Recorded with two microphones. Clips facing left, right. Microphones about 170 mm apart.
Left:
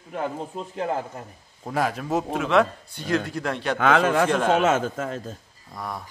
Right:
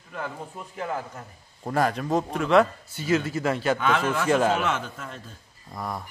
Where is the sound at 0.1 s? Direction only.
25° left (ahead or behind).